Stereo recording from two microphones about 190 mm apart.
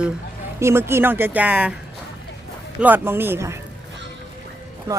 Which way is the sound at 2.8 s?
10° right (ahead or behind).